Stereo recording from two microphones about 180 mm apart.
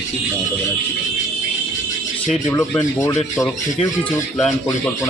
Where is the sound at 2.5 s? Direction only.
15° left (ahead or behind).